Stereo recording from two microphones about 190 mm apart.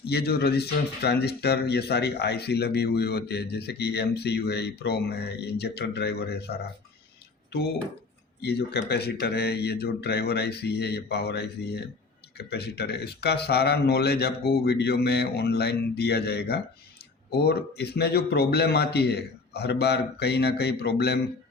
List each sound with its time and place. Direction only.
0.0 s speech: 55° left (ahead or behind)
8.4 s speech: 60° left (ahead or behind)